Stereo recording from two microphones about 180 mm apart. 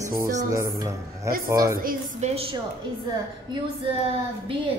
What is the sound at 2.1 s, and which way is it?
Speech, 40° right (ahead or behind).